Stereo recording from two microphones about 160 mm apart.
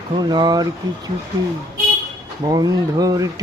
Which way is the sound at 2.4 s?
25° right (ahead or behind).